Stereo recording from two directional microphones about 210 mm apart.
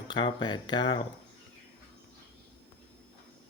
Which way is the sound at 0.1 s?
20° left (ahead or behind).